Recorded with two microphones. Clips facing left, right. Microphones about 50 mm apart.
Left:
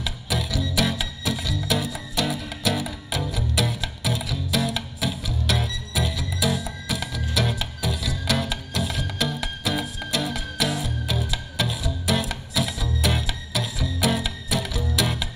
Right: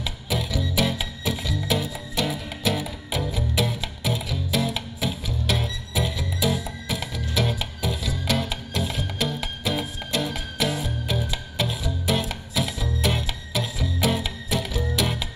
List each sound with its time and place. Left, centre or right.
0.0 s music: centre